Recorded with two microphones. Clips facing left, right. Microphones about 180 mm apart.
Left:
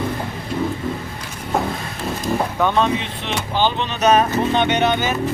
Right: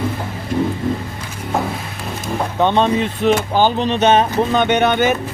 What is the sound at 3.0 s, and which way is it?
Speech, 45° right (ahead or behind).